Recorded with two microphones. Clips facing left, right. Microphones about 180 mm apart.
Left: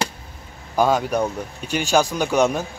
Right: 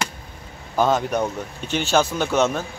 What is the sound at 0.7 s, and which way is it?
Speech, 10° left (ahead or behind).